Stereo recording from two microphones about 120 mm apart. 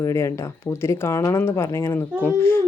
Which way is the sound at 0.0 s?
25° left (ahead or behind).